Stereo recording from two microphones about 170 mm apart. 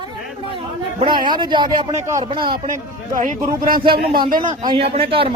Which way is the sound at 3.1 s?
55° right (ahead or behind).